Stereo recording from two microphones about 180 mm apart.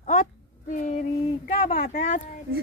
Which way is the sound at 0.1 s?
45° left (ahead or behind).